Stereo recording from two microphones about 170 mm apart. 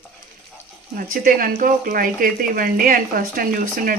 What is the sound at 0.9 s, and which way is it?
Speech, 55° right (ahead or behind).